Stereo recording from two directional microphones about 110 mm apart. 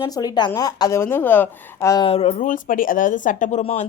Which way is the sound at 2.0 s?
65° left (ahead or behind).